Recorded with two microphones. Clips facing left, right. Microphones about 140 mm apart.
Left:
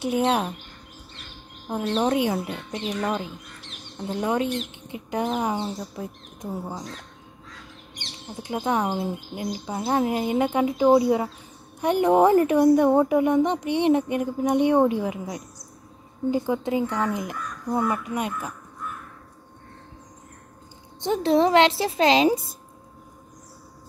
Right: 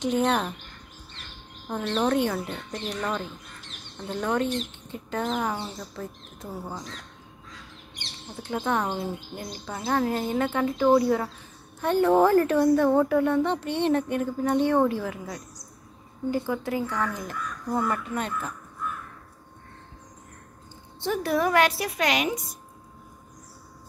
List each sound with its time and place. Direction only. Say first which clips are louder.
0.0 s speech: left 1 dB; 10° left (ahead or behind)
1.7 s speech: left 2 dB; 10° left (ahead or behind)
8.4 s speech: left 2 dB; 15° left (ahead or behind)
21.0 s a woman's voice: left 5 dB; 20° left (ahead or behind)